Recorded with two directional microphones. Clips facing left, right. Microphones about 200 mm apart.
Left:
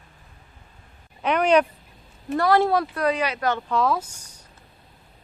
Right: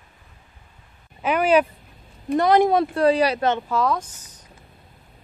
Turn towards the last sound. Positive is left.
turn(degrees=10)  # may be behind; listen again after turning